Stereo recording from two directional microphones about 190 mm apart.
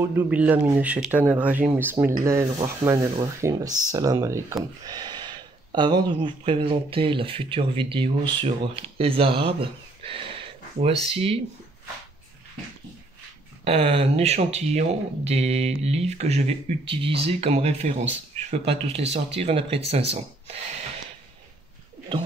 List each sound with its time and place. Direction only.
0.0 s speech: 10° right (ahead or behind); by 11.4 s 30° right (ahead or behind)
13.7 s speech: 30° right (ahead or behind)
22.1 s speech: 25° right (ahead or behind)